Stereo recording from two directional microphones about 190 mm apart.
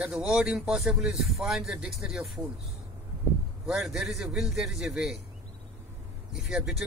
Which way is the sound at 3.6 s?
Centre (ahead or behind).